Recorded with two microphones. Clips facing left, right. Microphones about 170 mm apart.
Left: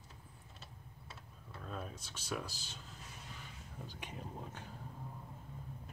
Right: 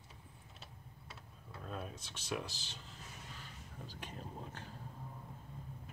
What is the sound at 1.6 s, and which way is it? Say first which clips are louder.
Speech: even; 5° right (ahead or behind).